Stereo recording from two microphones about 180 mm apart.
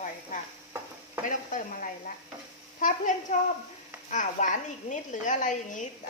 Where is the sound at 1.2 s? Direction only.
45° left (ahead or behind).